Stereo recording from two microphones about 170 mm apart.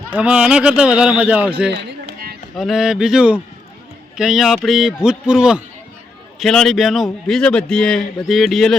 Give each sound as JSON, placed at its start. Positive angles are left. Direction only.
{"t": 0.1, "sound": "speech", "side_deg": -5}
{"t": 2.1, "sound": "run", "side_deg": -65}
{"t": 2.6, "sound": "a man's voice", "side_deg": 0}